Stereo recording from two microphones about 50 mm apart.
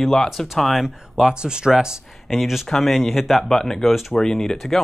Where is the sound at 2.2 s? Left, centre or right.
Centre.